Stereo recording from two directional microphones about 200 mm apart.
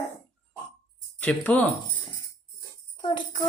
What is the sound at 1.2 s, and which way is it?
Speech, 5° left (ahead or behind).